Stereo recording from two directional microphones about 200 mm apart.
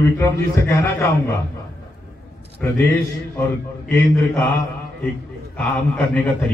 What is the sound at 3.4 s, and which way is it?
A man's voice, 15° left (ahead or behind).